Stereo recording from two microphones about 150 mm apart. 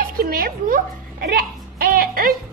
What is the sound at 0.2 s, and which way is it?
A woman's voice, 80° right.